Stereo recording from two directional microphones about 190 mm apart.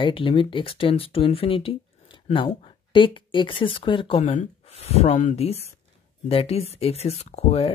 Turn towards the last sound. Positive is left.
turn(degrees=35)  # may be behind; listen again after turning